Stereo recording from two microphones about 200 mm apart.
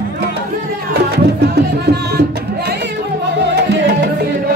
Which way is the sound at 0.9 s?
55° right (ahead or behind).